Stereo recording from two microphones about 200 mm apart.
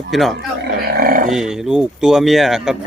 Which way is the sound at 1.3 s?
Centre (ahead or behind).